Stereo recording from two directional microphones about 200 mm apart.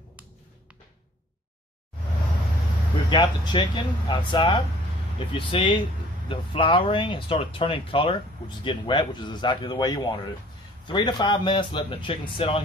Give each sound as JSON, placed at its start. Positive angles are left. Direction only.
{"t": 3.1, "sound": "speech", "side_deg": 20}